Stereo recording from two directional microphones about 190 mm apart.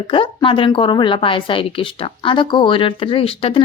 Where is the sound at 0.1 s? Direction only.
25° left (ahead or behind).